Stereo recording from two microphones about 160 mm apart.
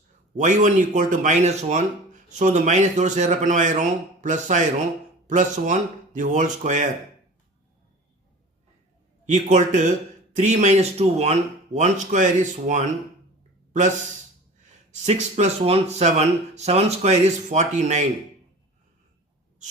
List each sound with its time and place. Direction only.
0.3 s speech: 50° right (ahead or behind)
9.2 s speech: 50° right (ahead or behind)
15.0 s speech: 45° right (ahead or behind)